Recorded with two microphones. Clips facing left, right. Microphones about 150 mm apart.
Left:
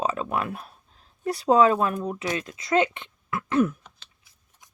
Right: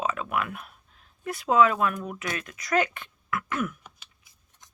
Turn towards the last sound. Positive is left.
turn(degrees=-15)  # may be behind; listen again after turning